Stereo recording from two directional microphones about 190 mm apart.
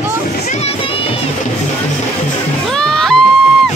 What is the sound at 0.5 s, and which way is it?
Music, 35° left (ahead or behind).